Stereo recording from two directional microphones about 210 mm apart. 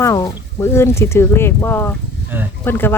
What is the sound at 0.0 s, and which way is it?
Speech, 15° left (ahead or behind).